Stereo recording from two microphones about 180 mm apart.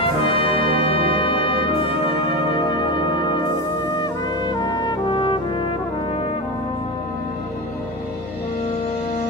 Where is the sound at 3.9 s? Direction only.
25° left (ahead or behind).